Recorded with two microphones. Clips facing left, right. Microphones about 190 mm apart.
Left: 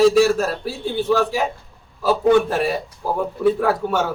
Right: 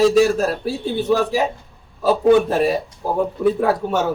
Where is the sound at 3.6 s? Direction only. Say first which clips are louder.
Right 1 dB; 25° right (ahead or behind).